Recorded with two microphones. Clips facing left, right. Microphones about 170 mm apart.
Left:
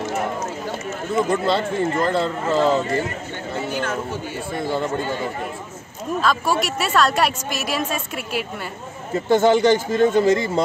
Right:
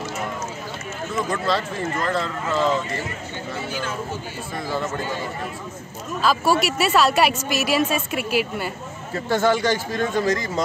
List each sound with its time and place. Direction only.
1.1 s speech: 25° left (ahead or behind)
4.6 s speech: 25° left (ahead or behind)
6.2 s a woman's voice: centre (ahead or behind)
9.3 s speech: 20° left (ahead or behind)